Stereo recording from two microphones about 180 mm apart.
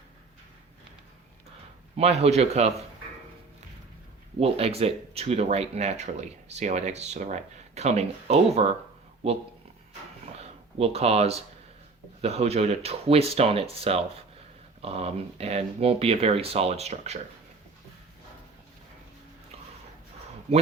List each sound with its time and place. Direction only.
2.0 s speech: 35° right (ahead or behind)
4.4 s speech: 35° right (ahead or behind)
10.3 s a sound: 35° right (ahead or behind)
12.2 s speech: 35° right (ahead or behind)